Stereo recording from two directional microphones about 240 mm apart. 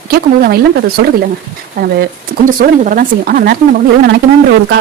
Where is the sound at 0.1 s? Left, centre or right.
Right.